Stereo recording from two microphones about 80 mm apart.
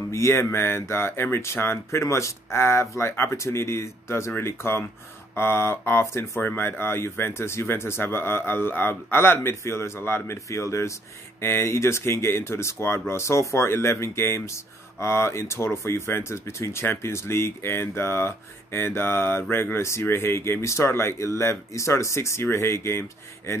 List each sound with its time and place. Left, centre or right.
0.1 s speech: left